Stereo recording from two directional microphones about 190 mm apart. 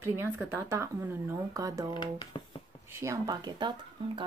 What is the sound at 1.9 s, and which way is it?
Speech, 25° left (ahead or behind).